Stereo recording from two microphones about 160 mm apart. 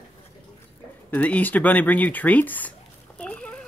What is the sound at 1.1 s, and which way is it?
Speech, 10° left (ahead or behind).